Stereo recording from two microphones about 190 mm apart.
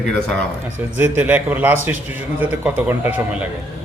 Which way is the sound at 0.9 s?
10° right (ahead or behind).